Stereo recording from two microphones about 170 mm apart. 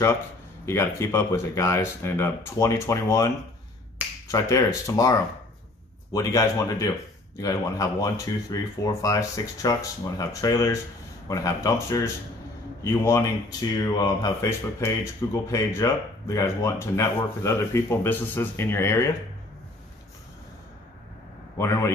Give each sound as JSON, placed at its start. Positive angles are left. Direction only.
{"t": 0.7, "sound": "speech", "side_deg": 15}
{"t": 4.3, "sound": "speech", "side_deg": 20}
{"t": 21.5, "sound": "speech", "side_deg": 15}